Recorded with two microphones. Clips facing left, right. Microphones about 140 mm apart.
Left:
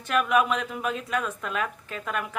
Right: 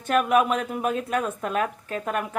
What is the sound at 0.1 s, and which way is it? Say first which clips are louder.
Speech: right 3 dB; 40° right (ahead or behind).